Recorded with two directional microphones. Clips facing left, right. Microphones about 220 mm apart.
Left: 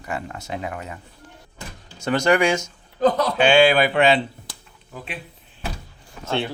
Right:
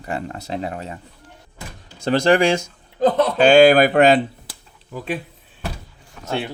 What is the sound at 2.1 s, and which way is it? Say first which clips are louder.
Speech: right 3 dB; 30° right (ahead or behind).